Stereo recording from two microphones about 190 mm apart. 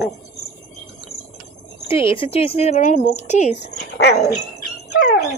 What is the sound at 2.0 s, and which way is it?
Speech, 30° left (ahead or behind).